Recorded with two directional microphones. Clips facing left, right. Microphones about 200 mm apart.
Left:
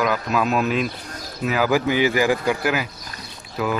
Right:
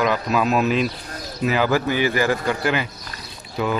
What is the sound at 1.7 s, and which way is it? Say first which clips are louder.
A man's voice: left 1 dB; 15° left (ahead or behind).